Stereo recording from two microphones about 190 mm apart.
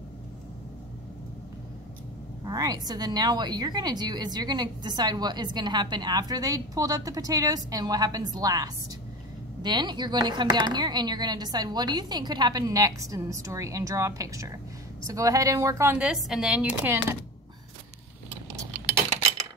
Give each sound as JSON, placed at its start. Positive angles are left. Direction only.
{"t": 2.4, "sound": "a woman's voice", "side_deg": -20}